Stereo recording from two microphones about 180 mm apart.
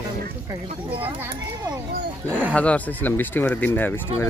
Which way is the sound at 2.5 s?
5° left (ahead or behind).